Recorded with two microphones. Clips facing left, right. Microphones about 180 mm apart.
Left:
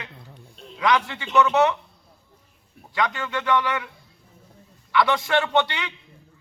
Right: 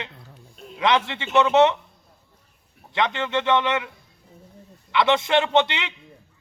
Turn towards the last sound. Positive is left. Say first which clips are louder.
# right 2 dB
turn(degrees=-20)  # may be behind; listen again after turning